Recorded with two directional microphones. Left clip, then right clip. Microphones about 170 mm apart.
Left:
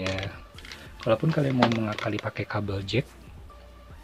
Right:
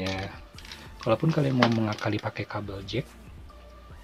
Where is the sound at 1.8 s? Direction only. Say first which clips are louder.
Even; 15° right (ahead or behind).